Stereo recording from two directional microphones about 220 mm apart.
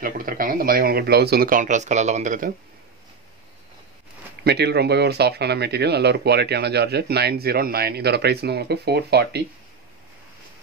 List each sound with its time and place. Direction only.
0.0 s speech: 40° right (ahead or behind)
4.5 s speech: 50° right (ahead or behind)